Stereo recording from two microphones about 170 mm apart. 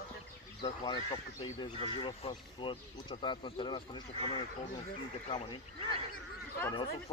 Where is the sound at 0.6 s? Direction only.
30° left (ahead or behind).